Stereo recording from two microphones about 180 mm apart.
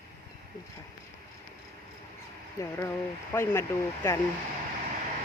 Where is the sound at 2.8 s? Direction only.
15° left (ahead or behind).